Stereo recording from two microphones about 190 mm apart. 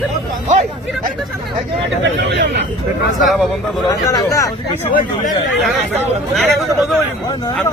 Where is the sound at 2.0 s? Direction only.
70° right (ahead or behind).